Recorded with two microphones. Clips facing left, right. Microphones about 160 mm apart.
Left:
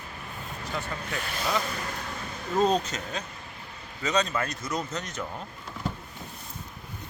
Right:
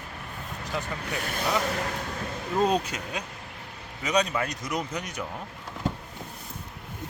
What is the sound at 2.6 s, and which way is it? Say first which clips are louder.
Speech: even; 10° right (ahead or behind).